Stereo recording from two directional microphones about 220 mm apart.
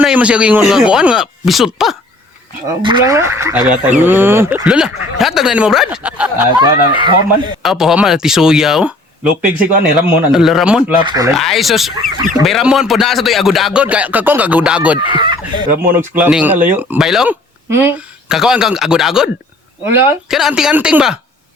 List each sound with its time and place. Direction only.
0.0 s speech: 5° right (ahead or behind)
2.8 s speech: 15° right (ahead or behind)
6.6 s speech: 20° right (ahead or behind)
7.6 s speech: centre (ahead or behind)
11.0 s speech: 20° right (ahead or behind)
11.3 s speech: centre (ahead or behind)
15.1 s speech: 20° right (ahead or behind)
15.8 s speech: 10° right (ahead or behind)